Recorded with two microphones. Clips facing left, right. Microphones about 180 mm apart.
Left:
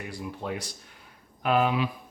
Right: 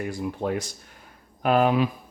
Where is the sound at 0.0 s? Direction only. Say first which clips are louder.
Right 7 dB; 50° right (ahead or behind).